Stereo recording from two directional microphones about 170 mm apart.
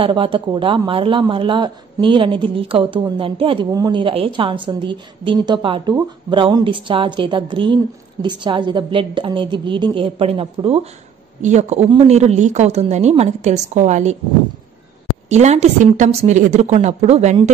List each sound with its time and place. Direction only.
0.0 s a woman's voice: 30° right (ahead or behind)
15.2 s a woman's voice: 40° right (ahead or behind)